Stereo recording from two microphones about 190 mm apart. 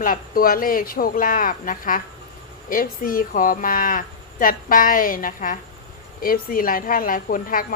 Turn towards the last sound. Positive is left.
turn(degrees=45)  # may be behind; listen again after turning